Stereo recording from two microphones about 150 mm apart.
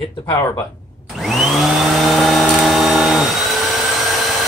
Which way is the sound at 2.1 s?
Centre (ahead or behind).